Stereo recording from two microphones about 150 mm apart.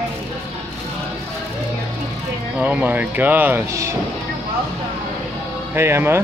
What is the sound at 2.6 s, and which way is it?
Speech, 10° right (ahead or behind).